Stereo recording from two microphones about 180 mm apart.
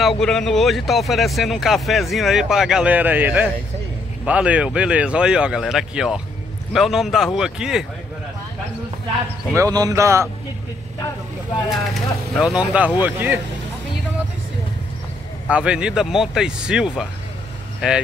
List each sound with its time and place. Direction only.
0.0 s speech: centre (ahead or behind)
9.6 s speech: 20° right (ahead or behind)
12.4 s speech: 5° right (ahead or behind)
15.4 s speech: 5° right (ahead or behind)